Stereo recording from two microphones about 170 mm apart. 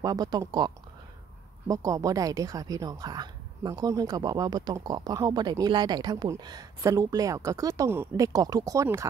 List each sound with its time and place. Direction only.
0.0 s speech: 20° right (ahead or behind)